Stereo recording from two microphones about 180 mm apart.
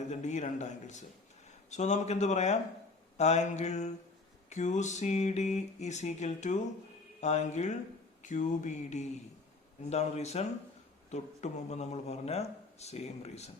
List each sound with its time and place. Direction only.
0.1 s a man's voice: 40° left (ahead or behind)
8.2 s mantra: 45° left (ahead or behind)
9.9 s a man's voice: 40° left (ahead or behind)